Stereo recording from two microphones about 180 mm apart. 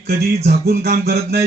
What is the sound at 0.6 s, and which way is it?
Speech, 60° right (ahead or behind).